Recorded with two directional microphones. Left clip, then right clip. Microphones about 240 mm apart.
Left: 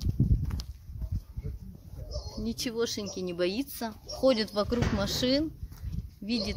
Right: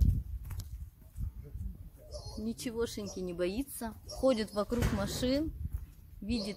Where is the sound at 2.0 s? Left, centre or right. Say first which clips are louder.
Left 4 dB; right.